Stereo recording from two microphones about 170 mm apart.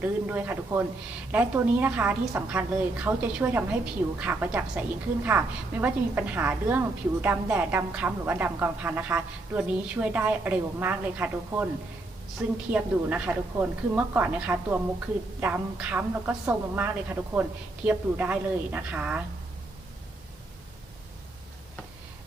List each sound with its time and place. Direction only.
0.0 s a woman's voice: 10° right (ahead or behind)
12.7 s a woman's voice: 10° right (ahead or behind)